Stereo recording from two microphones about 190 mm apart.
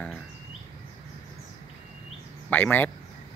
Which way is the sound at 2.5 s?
10° left (ahead or behind).